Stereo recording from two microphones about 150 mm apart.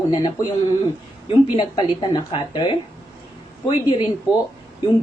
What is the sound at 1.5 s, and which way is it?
A woman's voice, 30° left (ahead or behind).